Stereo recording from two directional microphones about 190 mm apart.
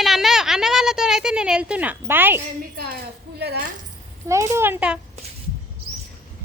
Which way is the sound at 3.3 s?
60° right (ahead or behind).